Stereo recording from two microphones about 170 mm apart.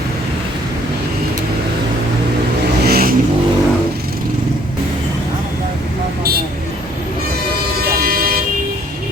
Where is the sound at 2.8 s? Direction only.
65° right (ahead or behind).